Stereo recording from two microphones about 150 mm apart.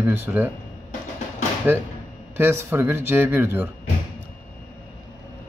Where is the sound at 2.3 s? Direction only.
15° right (ahead or behind).